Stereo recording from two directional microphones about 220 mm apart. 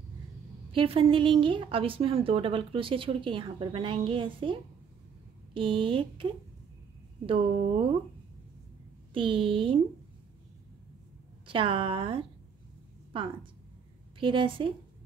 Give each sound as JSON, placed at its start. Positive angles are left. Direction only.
{"t": 0.7, "sound": "a woman's voice", "side_deg": -25}
{"t": 7.2, "sound": "a woman's voice", "side_deg": -25}
{"t": 9.1, "sound": "a woman's voice", "side_deg": -25}
{"t": 11.4, "sound": "a woman's voice", "side_deg": -25}